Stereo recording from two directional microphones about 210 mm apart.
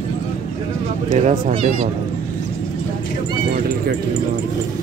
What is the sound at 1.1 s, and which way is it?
Speech, 30° right (ahead or behind).